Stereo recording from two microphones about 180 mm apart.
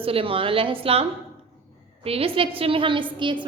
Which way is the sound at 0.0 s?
30° right (ahead or behind).